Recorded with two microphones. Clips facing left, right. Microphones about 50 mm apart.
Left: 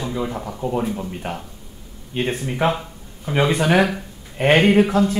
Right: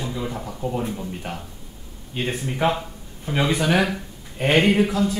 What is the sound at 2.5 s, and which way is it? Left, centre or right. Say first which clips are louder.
Speech: right 2 dB; centre.